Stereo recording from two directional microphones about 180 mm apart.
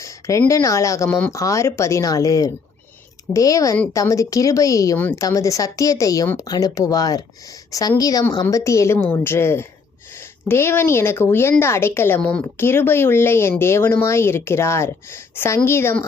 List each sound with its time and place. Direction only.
0.0 s a woman's voice: 15° left (ahead or behind)